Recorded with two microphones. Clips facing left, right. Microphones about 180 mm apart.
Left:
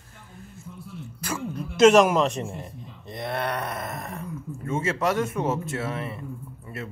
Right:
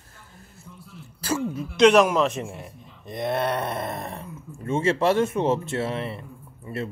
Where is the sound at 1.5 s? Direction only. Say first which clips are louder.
Left 1 dB; centre (ahead or behind).